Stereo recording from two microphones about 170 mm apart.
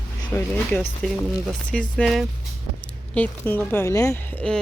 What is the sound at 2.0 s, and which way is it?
Speech, centre (ahead or behind).